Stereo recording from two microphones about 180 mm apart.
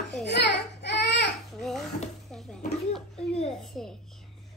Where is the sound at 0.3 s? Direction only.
70° left (ahead or behind).